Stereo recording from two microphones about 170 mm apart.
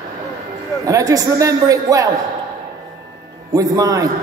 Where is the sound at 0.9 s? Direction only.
20° right (ahead or behind).